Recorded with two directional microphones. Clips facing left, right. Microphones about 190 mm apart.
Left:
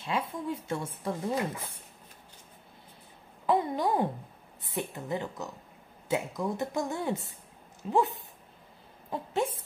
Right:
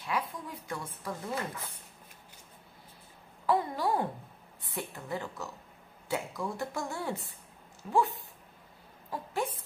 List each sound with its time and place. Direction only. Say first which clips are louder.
0.0 s speech: left 3 dB; 25° left (ahead or behind)
3.4 s a woman's voice: left 2 dB; 20° left (ahead or behind)